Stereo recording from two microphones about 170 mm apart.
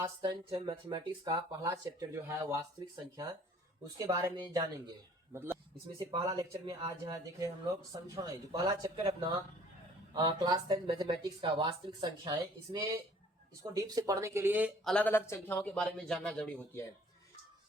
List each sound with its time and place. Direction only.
0.0 s speech: 25° right (ahead or behind)
6.1 s speech: 25° right (ahead or behind)
10.2 s speech: 25° right (ahead or behind)
14.8 s speech: 10° left (ahead or behind)